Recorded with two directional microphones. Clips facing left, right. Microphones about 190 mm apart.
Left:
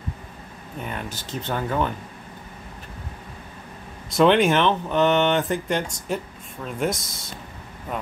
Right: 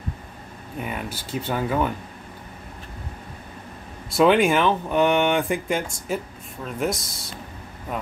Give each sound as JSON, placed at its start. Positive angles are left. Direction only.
{"t": 0.7, "sound": "speech", "side_deg": -10}
{"t": 4.2, "sound": "speech", "side_deg": -5}
{"t": 6.9, "sound": "speech", "side_deg": 45}